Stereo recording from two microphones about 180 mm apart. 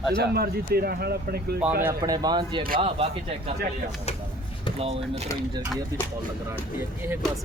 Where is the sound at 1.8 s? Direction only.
20° right (ahead or behind).